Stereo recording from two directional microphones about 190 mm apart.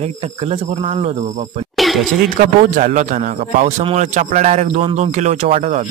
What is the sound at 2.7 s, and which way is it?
A man's voice, 40° right (ahead or behind).